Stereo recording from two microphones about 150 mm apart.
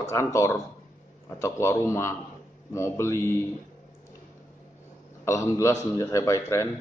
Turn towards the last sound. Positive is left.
turn(degrees=20)  # may be behind; listen again after turning